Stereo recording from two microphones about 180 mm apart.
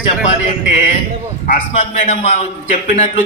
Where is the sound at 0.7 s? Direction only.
45° left (ahead or behind).